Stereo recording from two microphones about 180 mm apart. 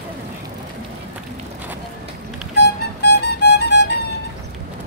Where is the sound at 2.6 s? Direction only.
65° left (ahead or behind).